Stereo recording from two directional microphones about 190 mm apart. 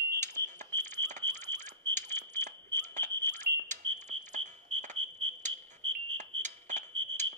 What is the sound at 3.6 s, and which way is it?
Smoke detector, 40° right (ahead or behind).